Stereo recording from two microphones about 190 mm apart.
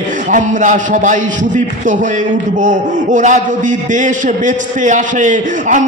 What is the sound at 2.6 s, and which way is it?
Speech, 40° right (ahead or behind).